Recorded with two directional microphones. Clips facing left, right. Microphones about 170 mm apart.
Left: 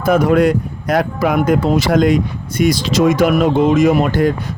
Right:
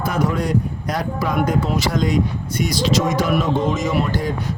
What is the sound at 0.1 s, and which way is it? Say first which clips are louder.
Speech: left 10 dB; 60° left (ahead or behind).